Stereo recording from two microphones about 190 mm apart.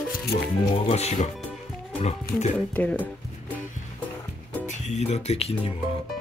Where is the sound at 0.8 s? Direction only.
35° left (ahead or behind).